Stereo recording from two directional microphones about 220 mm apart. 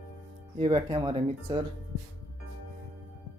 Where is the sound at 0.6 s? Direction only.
15° right (ahead or behind).